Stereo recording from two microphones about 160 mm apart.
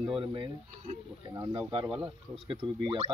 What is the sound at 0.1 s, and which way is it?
Speech, 30° right (ahead or behind).